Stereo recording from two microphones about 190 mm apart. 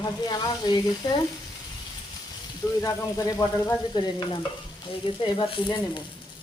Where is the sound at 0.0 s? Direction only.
20° left (ahead or behind).